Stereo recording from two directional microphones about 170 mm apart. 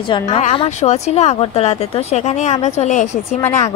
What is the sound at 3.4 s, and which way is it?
Speech, 15° left (ahead or behind).